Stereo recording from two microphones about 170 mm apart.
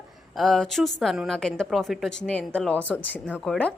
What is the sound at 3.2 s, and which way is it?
Speech, centre (ahead or behind).